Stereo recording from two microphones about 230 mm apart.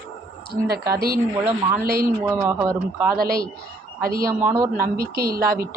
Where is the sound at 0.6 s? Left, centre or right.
Right.